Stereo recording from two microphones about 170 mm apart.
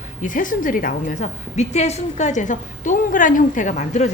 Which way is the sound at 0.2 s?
50° left (ahead or behind).